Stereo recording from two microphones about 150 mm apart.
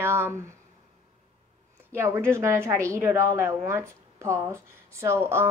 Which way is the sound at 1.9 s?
15° right (ahead or behind).